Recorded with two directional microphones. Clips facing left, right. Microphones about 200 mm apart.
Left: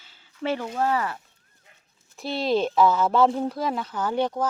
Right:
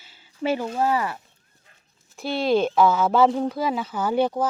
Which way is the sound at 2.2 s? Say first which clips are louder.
Right 3 dB; centre (ahead or behind).